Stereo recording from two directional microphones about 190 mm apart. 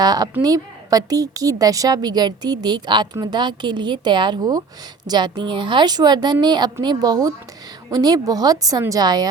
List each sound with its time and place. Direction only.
0.0 s a woman's voice: 20° right (ahead or behind)